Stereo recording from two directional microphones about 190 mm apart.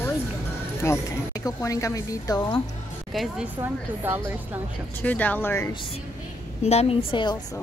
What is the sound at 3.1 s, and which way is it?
A woman's voice, 5° right (ahead or behind).